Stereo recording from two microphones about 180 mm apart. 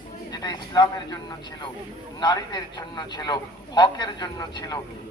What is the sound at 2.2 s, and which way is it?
A man's voice, 25° left (ahead or behind).